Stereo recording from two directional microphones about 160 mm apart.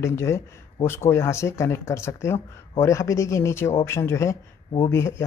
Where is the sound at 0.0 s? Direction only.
15° left (ahead or behind).